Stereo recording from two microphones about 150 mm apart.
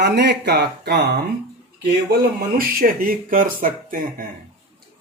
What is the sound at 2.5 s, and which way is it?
Speech, 75° right (ahead or behind).